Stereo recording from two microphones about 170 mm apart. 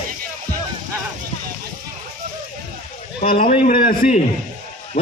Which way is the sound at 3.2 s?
55° left (ahead or behind).